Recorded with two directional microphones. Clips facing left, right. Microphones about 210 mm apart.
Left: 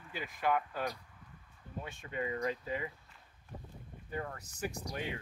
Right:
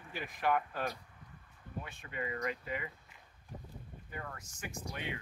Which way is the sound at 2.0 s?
30° left (ahead or behind).